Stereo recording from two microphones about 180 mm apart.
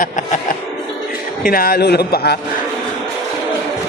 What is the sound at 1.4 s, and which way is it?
A man's voice, 55° left (ahead or behind).